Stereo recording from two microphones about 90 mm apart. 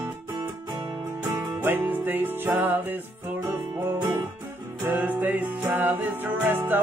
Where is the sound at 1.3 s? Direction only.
25° right (ahead or behind).